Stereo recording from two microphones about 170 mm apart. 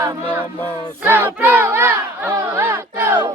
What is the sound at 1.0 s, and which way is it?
Child singing, 10° right (ahead or behind).